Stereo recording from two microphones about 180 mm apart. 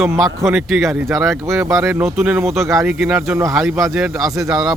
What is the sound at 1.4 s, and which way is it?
Speech, 15° right (ahead or behind).